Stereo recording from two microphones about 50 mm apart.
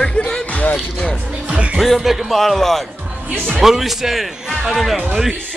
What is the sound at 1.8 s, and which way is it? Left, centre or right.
Speech, centre.